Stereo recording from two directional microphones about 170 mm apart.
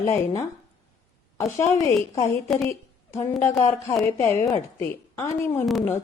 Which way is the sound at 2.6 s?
15° left (ahead or behind).